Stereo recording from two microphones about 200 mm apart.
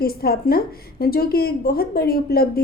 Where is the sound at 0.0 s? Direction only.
50° left (ahead or behind).